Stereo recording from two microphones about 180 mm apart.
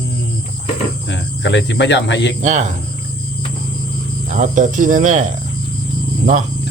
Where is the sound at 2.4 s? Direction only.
40° right (ahead or behind).